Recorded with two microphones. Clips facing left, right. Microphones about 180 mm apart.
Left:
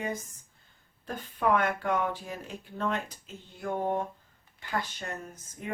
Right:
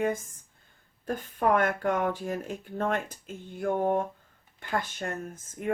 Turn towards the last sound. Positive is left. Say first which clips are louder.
# right 5 dB
turn(degrees=-50)  # may be behind; listen again after turning